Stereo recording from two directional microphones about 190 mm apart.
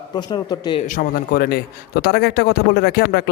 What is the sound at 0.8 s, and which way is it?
A man's voice, 45° left (ahead or behind).